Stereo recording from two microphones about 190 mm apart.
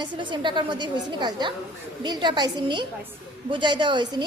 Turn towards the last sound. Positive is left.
turn(degrees=-25)  # may be behind; listen again after turning